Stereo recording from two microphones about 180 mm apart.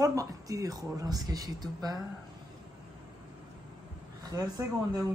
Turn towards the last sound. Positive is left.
turn(degrees=-20)  # may be behind; listen again after turning